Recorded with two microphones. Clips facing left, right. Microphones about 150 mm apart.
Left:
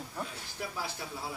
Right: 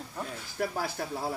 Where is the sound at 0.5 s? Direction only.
50° right (ahead or behind).